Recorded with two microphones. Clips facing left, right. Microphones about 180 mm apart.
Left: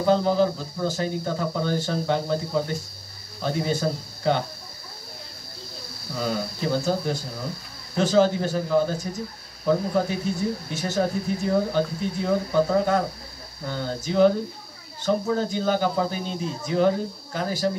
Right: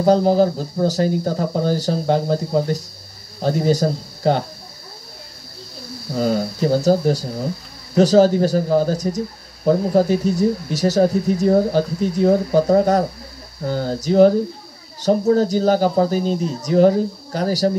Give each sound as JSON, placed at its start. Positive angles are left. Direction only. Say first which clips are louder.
{"t": 0.0, "sound": "speech", "louder": "right 6 dB", "side_deg": -40}
{"t": 6.1, "sound": "speech", "louder": "right 8 dB", "side_deg": -40}